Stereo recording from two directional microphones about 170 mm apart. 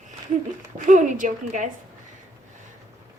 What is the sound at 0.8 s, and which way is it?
Speech, 50° right (ahead or behind).